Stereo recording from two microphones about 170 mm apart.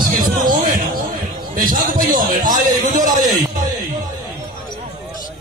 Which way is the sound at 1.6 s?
55° right (ahead or behind).